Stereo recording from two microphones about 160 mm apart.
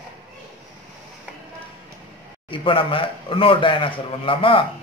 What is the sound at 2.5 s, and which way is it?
Speech, 35° left (ahead or behind).